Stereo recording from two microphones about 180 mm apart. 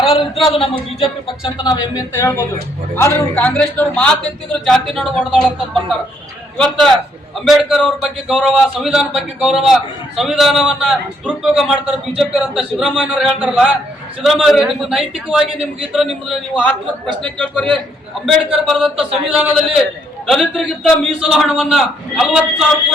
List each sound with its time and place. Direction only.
0.1 s a man's voice: 30° left (ahead or behind)
1.5 s a man's voice: 20° left (ahead or behind); by 22.6 s 5° right (ahead or behind)